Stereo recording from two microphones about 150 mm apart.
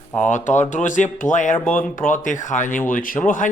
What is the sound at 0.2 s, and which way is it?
Speech, 55° left (ahead or behind).